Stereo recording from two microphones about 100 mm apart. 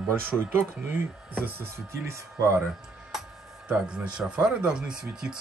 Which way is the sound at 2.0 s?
30° right (ahead or behind).